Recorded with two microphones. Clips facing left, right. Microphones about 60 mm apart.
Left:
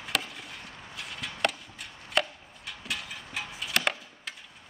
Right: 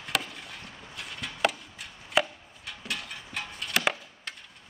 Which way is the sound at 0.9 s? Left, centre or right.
Centre.